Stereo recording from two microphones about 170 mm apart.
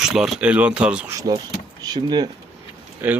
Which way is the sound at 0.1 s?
5° right (ahead or behind).